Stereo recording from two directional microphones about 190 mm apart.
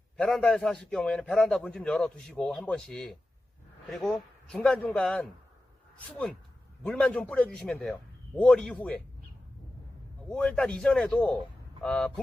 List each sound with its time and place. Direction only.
0.2 s a man's voice: 5° left (ahead or behind)
10.2 s a man's voice: 5° left (ahead or behind)